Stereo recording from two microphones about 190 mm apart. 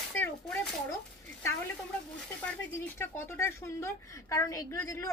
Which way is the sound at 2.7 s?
15° left (ahead or behind).